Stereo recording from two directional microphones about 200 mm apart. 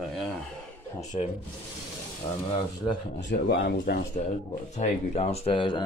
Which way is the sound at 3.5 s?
55° left (ahead or behind).